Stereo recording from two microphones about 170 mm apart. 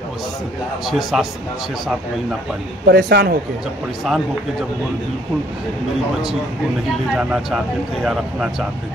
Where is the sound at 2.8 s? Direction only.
80° right.